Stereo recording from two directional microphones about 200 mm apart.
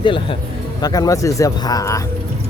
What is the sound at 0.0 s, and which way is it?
Speech, 25° left (ahead or behind).